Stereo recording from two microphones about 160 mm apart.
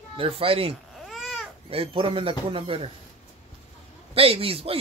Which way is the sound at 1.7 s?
35° right (ahead or behind).